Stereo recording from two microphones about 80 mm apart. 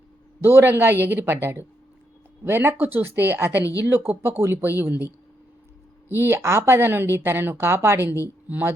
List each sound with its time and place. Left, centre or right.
0.4 s a woman's voice: right
3.6 s speech: left
3.8 s a woman's voice: right
6.1 s a woman's voice: right